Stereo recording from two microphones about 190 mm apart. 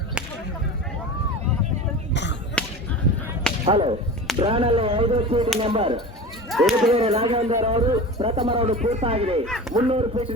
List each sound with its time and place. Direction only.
2.6 s whip: 5° left (ahead or behind)
3.7 s a sound: 30° right (ahead or behind)
6.5 s speech: centre (ahead or behind)
6.9 s speech: 30° right (ahead or behind)